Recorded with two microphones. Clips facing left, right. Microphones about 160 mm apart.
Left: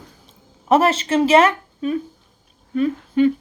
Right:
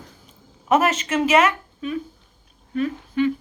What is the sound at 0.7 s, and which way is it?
A woman's voice, 30° left (ahead or behind).